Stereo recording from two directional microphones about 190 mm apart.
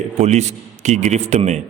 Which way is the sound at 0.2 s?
35° right (ahead or behind).